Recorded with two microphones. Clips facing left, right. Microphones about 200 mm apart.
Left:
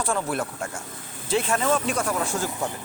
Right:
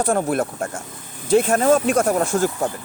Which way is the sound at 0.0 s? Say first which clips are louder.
Right 7 dB; 45° right (ahead or behind).